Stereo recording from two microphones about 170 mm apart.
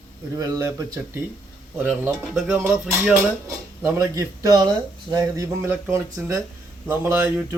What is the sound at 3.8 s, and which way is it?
Speech, 15° right (ahead or behind).